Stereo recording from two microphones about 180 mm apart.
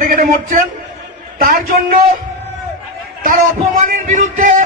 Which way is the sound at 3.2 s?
50° right (ahead or behind).